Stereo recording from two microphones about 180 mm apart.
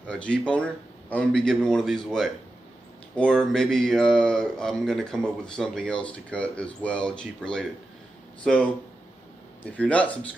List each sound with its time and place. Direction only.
0.0 s speech: 5° left (ahead or behind)
9.7 s speech: 5° left (ahead or behind)